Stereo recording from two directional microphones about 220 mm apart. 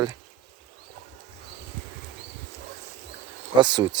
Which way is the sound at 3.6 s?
20° right (ahead or behind).